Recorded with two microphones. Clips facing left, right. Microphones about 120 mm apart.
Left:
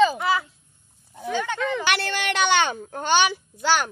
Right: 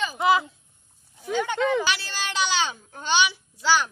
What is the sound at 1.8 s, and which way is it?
A child's voice, 60° left (ahead or behind).